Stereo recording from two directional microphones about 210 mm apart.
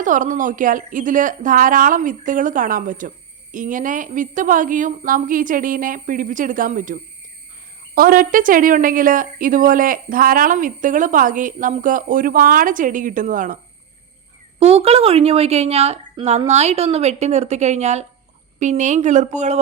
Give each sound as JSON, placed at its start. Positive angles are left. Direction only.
{"t": 0.0, "sound": "a woman's voice", "side_deg": -40}
{"t": 14.6, "sound": "a woman's voice", "side_deg": -30}